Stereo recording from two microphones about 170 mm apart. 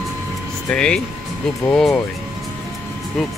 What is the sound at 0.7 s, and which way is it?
Speech, 5° left (ahead or behind).